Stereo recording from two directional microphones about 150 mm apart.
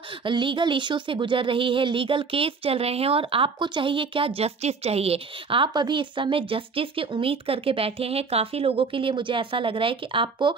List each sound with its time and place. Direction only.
0.2 s speech: 35° right (ahead or behind)